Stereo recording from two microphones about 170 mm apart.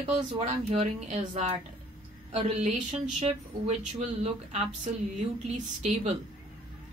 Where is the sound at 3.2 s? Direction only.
35° right (ahead or behind).